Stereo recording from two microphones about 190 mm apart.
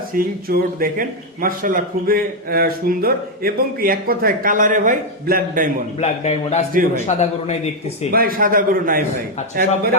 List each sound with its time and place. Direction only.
0.1 s a man's voice: 50° right (ahead or behind)
6.0 s a man's voice: 35° left (ahead or behind)
8.1 s a man's voice: 50° right (ahead or behind)